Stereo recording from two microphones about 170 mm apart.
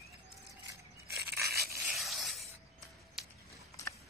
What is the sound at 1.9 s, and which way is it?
Scrape, centre (ahead or behind).